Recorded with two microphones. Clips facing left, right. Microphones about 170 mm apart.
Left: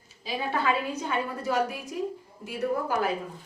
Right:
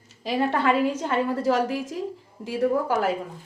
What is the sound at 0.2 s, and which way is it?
A woman's voice, 75° right (ahead or behind).